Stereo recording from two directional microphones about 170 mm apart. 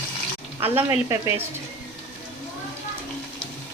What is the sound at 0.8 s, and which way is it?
Speech, 15° right (ahead or behind).